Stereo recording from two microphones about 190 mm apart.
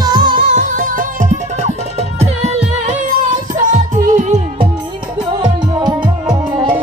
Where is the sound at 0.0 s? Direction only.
20° right (ahead or behind).